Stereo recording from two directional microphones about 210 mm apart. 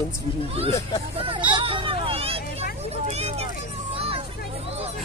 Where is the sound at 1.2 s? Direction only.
25° right (ahead or behind).